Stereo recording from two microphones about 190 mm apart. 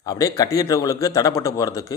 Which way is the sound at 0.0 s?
20° left (ahead or behind).